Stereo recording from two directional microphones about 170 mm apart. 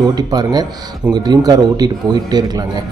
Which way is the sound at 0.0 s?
25° right (ahead or behind).